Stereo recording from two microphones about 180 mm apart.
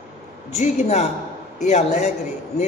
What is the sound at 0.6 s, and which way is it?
A man's voice, 40° left (ahead or behind).